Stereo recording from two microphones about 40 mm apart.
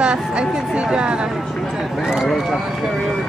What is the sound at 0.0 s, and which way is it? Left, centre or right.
Speech, right.